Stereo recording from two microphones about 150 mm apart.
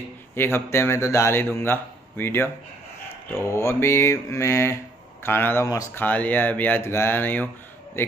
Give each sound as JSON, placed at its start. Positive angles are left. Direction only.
{"t": 0.4, "sound": "a man's voice", "side_deg": 15}